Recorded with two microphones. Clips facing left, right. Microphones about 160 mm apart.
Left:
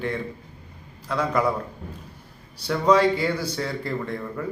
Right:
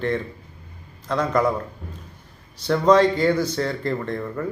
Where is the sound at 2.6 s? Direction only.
10° left (ahead or behind).